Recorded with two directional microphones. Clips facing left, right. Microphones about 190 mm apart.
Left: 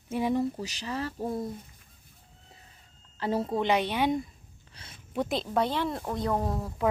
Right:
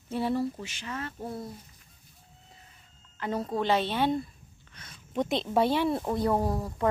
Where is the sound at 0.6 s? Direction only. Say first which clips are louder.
Left 4 dB; 35° left (ahead or behind).